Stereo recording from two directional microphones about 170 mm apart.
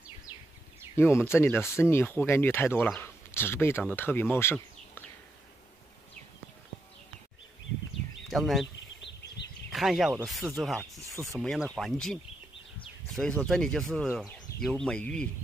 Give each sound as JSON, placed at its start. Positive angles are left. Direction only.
{"t": 0.9, "sound": "speech", "side_deg": 15}
{"t": 8.3, "sound": "speech", "side_deg": 0}
{"t": 9.7, "sound": "speech", "side_deg": 0}
{"t": 11.4, "sound": "speech", "side_deg": 0}